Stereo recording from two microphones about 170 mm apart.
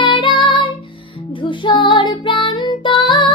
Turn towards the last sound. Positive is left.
turn(degrees=30)  # may be behind; listen again after turning